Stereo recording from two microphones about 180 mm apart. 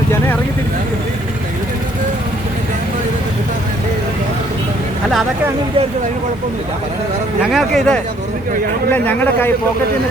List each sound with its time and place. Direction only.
7.5 s speech: centre (ahead or behind)